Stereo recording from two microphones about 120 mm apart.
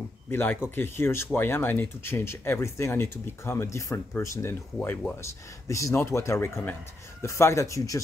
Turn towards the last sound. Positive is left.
turn(degrees=30)  # may be behind; listen again after turning